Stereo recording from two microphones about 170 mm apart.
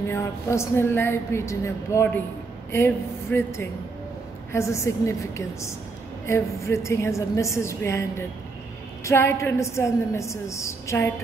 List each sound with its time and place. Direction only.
0.1 s a woman's voice: 15° left (ahead or behind)